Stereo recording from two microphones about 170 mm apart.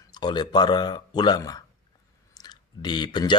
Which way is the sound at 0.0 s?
25° left (ahead or behind).